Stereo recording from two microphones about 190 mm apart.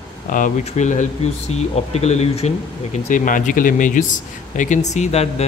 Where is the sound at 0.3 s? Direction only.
40° left (ahead or behind).